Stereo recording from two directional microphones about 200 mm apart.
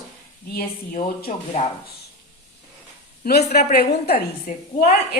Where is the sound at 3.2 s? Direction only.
50° left (ahead or behind).